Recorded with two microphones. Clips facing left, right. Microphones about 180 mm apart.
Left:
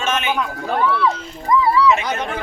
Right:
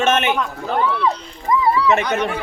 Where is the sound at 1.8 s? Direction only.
60° right (ahead or behind).